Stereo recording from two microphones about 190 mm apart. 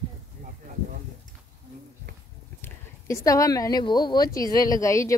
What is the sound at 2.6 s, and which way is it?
A woman's voice, 15° left (ahead or behind).